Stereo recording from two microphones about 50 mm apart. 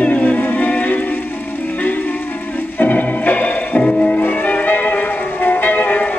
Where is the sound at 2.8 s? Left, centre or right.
Left.